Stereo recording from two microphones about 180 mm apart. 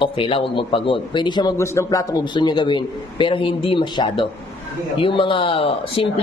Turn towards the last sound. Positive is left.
turn(degrees=30)  # may be behind; listen again after turning